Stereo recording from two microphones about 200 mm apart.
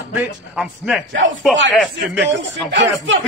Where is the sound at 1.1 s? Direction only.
70° right (ahead or behind).